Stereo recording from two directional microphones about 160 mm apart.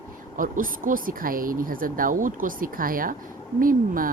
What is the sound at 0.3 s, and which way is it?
Speech, 55° right (ahead or behind).